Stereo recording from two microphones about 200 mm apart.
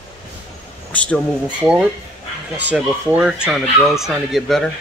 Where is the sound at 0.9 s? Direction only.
5° left (ahead or behind).